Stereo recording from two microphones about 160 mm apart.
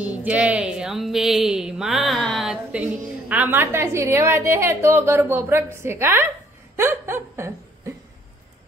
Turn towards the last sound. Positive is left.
turn(degrees=-15)  # may be behind; listen again after turning